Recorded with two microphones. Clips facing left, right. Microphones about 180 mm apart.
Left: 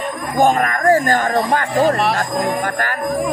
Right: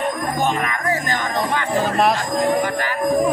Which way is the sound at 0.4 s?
50° left (ahead or behind).